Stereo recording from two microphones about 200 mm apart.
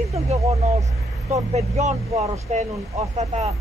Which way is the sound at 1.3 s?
35° right (ahead or behind).